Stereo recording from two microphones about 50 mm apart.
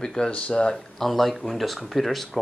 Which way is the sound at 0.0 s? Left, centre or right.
Centre.